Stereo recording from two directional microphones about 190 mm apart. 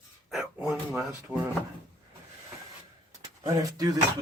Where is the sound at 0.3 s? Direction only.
Centre (ahead or behind).